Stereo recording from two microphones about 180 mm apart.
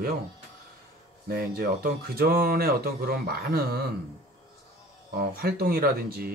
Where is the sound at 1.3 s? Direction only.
55° right (ahead or behind).